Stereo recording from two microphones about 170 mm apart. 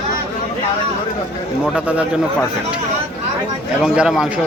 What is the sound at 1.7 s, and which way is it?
Speech, 10° right (ahead or behind).